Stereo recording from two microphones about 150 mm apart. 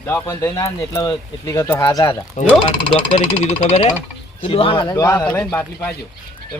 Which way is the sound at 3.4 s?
45° left (ahead or behind).